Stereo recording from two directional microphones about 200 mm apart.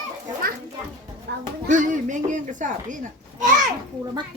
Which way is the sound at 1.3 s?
60° right (ahead or behind).